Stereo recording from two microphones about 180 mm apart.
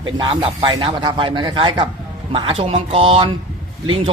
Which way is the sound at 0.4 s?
30° right (ahead or behind).